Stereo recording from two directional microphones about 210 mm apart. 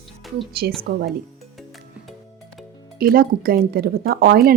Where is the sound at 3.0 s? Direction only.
45° right (ahead or behind).